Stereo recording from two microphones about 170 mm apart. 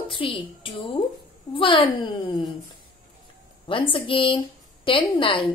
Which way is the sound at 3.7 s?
30° left (ahead or behind).